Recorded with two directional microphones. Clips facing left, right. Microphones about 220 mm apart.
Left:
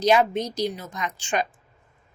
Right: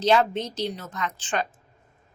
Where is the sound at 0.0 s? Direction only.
10° left (ahead or behind).